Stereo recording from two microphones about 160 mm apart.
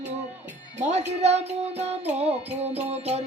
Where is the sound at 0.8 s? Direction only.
45° right (ahead or behind).